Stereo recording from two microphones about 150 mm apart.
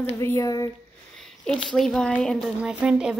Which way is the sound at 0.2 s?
20° left (ahead or behind).